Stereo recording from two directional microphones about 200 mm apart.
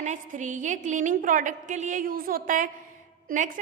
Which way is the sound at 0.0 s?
35° right (ahead or behind).